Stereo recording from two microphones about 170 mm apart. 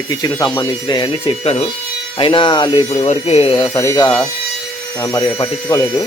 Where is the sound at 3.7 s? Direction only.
20° left (ahead or behind).